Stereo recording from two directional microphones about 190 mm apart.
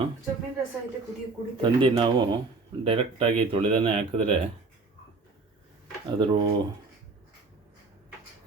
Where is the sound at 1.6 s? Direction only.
25° right (ahead or behind).